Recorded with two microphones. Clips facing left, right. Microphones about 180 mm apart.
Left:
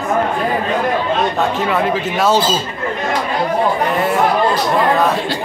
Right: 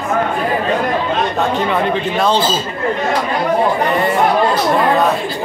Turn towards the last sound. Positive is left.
turn(degrees=0)  # may be behind; listen again after turning